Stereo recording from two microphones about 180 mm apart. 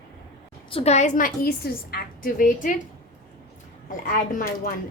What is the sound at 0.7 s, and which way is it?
A woman's voice, 35° left (ahead or behind).